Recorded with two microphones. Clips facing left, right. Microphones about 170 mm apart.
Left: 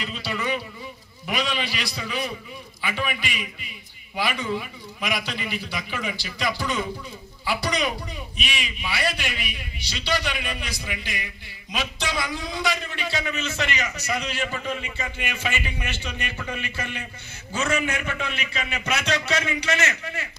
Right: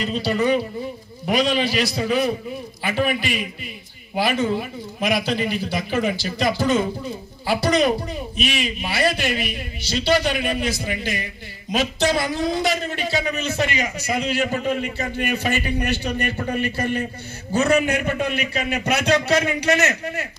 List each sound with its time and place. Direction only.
0.0 s a man's voice: 40° right (ahead or behind)
14.6 s a man's voice: 60° right (ahead or behind)
15.0 s a man's voice: 40° right (ahead or behind)